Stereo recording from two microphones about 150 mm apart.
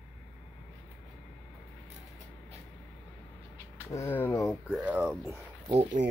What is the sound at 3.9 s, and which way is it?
Speech, 15° left (ahead or behind).